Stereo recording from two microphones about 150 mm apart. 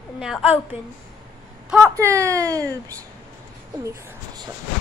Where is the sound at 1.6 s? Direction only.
5° right (ahead or behind).